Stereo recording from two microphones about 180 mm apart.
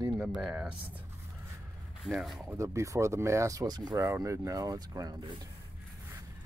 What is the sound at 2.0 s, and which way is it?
Speech, centre (ahead or behind).